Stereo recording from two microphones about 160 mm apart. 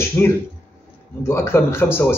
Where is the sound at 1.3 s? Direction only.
15° left (ahead or behind).